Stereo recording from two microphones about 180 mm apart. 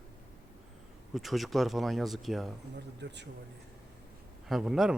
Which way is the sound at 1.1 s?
Centre (ahead or behind).